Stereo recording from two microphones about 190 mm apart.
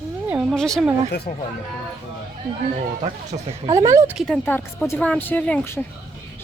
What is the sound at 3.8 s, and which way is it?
Speech, 15° right (ahead or behind).